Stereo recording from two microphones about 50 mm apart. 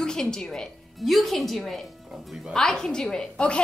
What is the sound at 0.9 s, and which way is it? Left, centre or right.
A woman's voice, centre.